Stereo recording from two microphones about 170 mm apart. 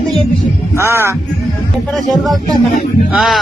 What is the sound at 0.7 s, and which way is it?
Speech, 15° right (ahead or behind).